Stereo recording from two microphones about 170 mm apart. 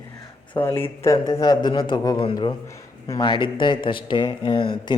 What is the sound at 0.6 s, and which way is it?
Speech, 30° left (ahead or behind).